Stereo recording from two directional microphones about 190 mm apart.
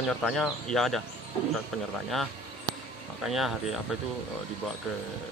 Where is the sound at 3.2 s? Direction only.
Centre (ahead or behind).